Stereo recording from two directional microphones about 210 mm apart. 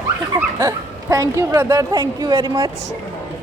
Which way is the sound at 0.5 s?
15° right (ahead or behind).